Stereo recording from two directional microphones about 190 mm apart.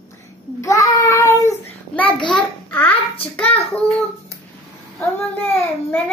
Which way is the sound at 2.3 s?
10° left (ahead or behind).